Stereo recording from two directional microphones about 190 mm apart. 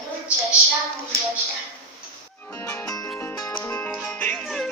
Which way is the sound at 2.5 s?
15° left (ahead or behind).